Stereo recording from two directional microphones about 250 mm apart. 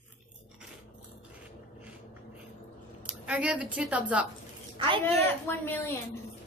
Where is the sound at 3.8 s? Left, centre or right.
Centre.